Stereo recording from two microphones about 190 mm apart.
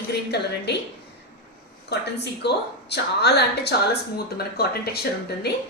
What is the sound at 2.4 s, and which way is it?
A woman's voice, 60° left (ahead or behind).